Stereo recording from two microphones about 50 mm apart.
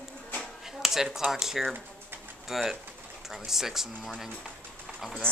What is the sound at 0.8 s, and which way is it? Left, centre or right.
Speech, centre.